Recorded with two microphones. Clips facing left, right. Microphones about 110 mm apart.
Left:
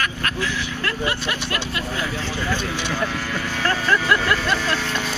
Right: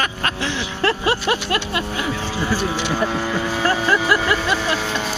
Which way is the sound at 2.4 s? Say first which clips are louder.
Right 5 dB; 15° right (ahead or behind).